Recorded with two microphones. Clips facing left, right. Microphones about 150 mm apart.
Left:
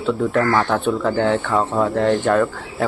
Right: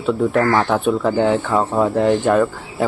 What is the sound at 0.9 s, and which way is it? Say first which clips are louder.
Speech: right 3 dB; 15° right (ahead or behind).